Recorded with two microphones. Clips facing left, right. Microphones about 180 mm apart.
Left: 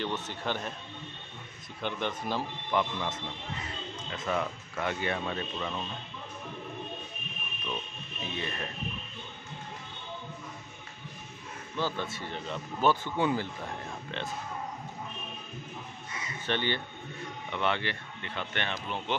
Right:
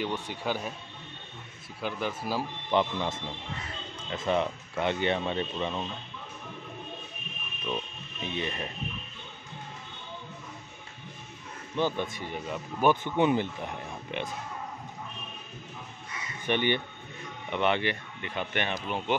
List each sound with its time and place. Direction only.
0.0 s speech: 10° right (ahead or behind)
1.8 s a man's voice: 5° right (ahead or behind)
2.7 s speech: 25° right (ahead or behind)
4.3 s speech: 25° right (ahead or behind)
8.4 s speech: 20° right (ahead or behind)
11.7 s speech: 15° right (ahead or behind)
16.4 s speech: 15° right (ahead or behind)